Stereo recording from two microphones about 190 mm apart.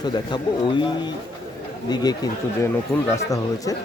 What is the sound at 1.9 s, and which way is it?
Speech, 20° left (ahead or behind).